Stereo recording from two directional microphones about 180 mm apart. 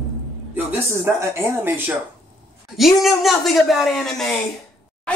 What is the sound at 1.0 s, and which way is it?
Speech, 15° right (ahead or behind).